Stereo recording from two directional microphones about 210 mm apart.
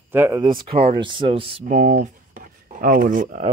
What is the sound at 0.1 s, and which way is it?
Speech, 10° right (ahead or behind).